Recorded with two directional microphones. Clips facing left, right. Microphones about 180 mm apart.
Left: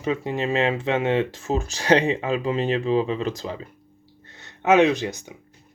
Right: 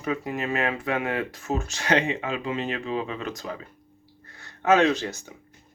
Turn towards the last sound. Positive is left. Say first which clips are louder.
# left 2 dB
turn(degrees=15)  # may be behind; listen again after turning